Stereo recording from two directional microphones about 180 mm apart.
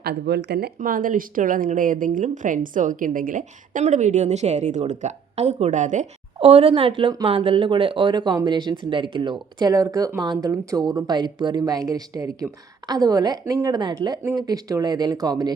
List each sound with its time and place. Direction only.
0.0 s speech: 65° right (ahead or behind)
0.8 s a woman's voice: 50° right (ahead or behind); by 15.5 s 20° right (ahead or behind)